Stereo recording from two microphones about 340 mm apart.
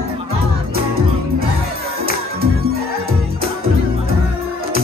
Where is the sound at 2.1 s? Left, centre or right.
Right.